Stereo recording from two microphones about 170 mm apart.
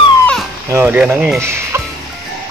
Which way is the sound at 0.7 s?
10° right (ahead or behind).